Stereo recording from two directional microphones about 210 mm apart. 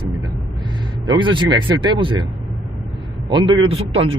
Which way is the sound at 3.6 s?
25° right (ahead or behind).